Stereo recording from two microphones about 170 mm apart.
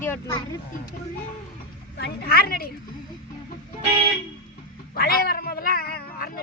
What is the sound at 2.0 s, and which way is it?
Speech, 65° left (ahead or behind).